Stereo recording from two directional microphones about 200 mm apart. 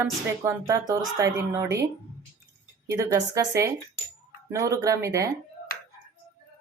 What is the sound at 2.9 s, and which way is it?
Speech, 15° right (ahead or behind).